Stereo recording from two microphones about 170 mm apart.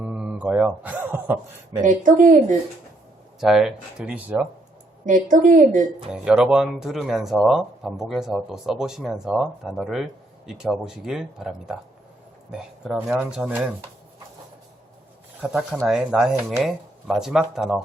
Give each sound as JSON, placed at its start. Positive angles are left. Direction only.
{"t": 0.0, "sound": "a sound", "side_deg": -5}
{"t": 1.8, "sound": "speech", "side_deg": -50}
{"t": 3.4, "sound": "speech", "side_deg": 0}
{"t": 5.0, "sound": "speech", "side_deg": -50}
{"t": 6.1, "sound": "speech", "side_deg": -5}
{"t": 15.4, "sound": "speech", "side_deg": -5}